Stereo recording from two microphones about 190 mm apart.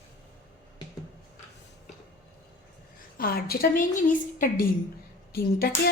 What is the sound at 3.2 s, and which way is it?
A woman's voice, 55° left (ahead or behind).